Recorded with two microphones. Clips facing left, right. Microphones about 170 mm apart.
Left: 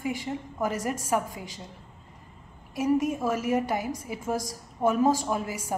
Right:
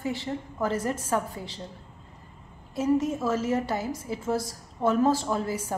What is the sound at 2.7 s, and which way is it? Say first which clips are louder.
A woman's voice: even; 15° left (ahead or behind).